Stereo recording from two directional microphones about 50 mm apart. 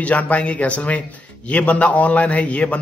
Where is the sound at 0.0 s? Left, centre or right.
Left.